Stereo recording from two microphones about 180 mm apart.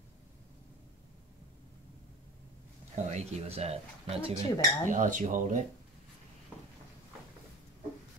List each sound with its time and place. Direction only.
3.1 s speech: 40° right (ahead or behind)